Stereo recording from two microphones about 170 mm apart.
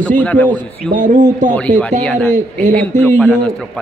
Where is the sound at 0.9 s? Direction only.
50° right (ahead or behind).